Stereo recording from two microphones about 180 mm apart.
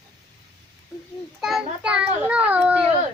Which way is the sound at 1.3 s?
Centre (ahead or behind).